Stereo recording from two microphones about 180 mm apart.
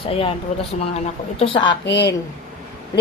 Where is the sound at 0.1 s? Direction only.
30° left (ahead or behind).